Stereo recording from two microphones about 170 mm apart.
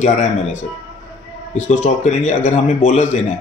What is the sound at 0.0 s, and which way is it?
Speech, 45° left (ahead or behind).